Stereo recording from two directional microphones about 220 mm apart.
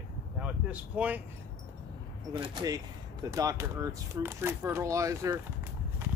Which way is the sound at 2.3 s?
20° right (ahead or behind).